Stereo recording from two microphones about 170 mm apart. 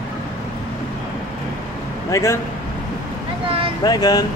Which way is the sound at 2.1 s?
15° left (ahead or behind).